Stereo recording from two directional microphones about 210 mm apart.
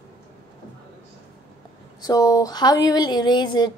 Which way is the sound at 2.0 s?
20° left (ahead or behind).